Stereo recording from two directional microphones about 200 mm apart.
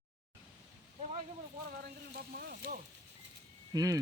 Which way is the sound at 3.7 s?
15° right (ahead or behind).